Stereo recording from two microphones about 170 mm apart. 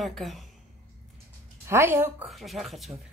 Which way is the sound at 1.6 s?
15° right (ahead or behind).